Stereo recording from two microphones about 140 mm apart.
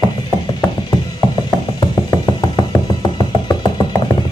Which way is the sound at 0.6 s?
25° left (ahead or behind).